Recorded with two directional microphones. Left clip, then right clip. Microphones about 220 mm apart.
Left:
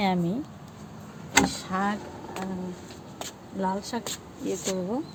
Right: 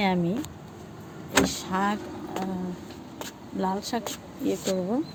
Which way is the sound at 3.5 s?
15° right (ahead or behind).